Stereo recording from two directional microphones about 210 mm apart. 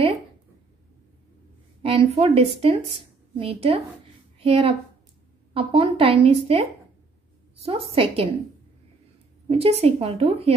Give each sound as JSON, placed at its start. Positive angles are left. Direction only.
{"t": 1.8, "sound": "a woman's voice", "side_deg": -25}
{"t": 9.5, "sound": "a woman's voice", "side_deg": -30}